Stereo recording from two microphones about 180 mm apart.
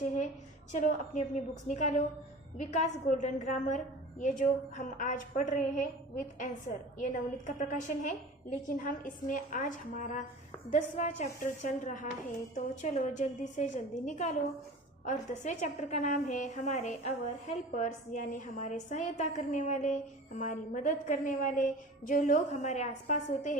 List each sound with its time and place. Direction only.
0.7 s a woman's voice: 40° left (ahead or behind)